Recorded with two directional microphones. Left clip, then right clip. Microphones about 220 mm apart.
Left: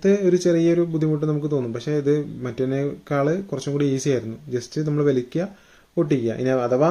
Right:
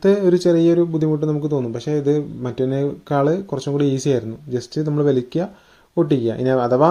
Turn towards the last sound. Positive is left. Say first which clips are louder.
# right 4 dB
turn(degrees=-20)  # may be behind; listen again after turning